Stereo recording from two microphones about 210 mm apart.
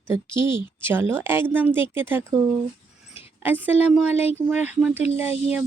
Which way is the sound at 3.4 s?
10° right (ahead or behind).